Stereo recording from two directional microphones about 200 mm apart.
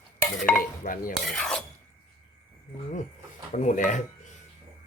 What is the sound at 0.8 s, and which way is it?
Dishes, 45° left (ahead or behind).